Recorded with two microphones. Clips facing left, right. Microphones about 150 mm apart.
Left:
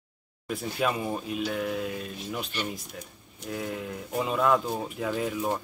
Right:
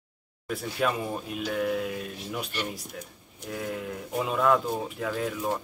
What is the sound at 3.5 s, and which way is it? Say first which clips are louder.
Speech: even; centre (ahead or behind).